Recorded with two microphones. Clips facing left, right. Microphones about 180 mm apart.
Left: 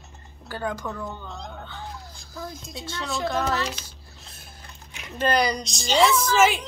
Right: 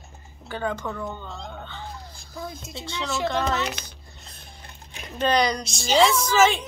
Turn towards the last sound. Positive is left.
turn(degrees=0)  # may be behind; listen again after turning